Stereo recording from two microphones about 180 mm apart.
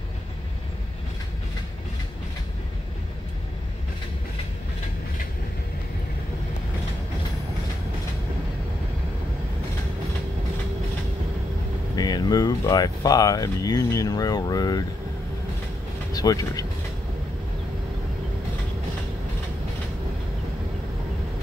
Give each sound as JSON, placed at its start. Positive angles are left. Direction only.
{"t": 11.9, "sound": "speech", "side_deg": 20}
{"t": 16.1, "sound": "speech", "side_deg": 20}